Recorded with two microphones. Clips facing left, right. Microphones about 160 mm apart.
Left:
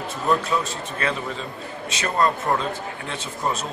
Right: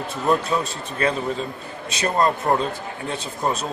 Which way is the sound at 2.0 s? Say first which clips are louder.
Right 2 dB; 30° right (ahead or behind).